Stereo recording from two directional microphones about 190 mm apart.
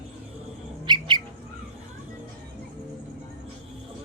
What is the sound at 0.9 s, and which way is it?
Bird, 25° right (ahead or behind).